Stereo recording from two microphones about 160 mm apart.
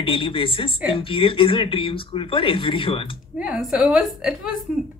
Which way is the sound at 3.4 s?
5° right (ahead or behind).